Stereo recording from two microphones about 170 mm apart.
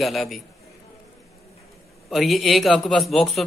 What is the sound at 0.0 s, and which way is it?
Speech, centre (ahead or behind).